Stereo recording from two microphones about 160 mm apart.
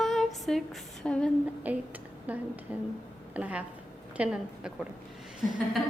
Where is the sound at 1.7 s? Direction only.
10° right (ahead or behind).